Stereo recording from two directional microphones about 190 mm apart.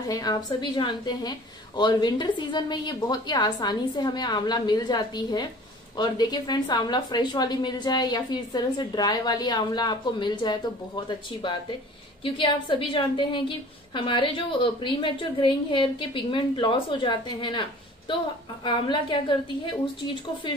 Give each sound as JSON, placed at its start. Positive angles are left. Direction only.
{"t": 0.1, "sound": "a woman's voice", "side_deg": 20}
{"t": 12.2, "sound": "a woman's voice", "side_deg": 25}